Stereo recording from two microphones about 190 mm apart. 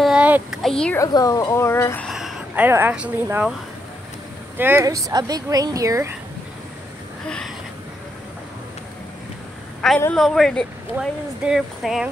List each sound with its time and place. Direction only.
0.0 s a sound: 5° right (ahead or behind)
0.9 s speech: 20° left (ahead or behind)
2.0 s speech: centre (ahead or behind)
4.6 s speech: 10° right (ahead or behind)
7.2 s a sound: 5° left (ahead or behind)
9.8 s a woman's voice: 5° left (ahead or behind)